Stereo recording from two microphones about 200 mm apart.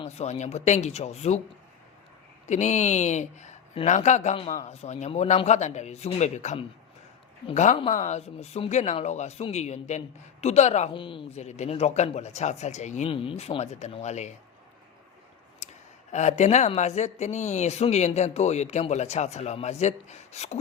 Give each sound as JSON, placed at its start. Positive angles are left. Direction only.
{"t": 0.0, "sound": "speech", "side_deg": 30}
{"t": 2.5, "sound": "speech", "side_deg": 35}
{"t": 16.1, "sound": "speech", "side_deg": 35}